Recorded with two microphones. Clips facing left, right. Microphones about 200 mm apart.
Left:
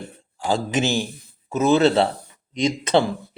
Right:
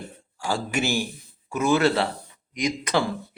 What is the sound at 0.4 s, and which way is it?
Speech, 20° left (ahead or behind).